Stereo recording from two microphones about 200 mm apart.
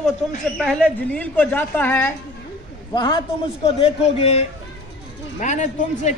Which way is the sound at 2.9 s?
20° left (ahead or behind).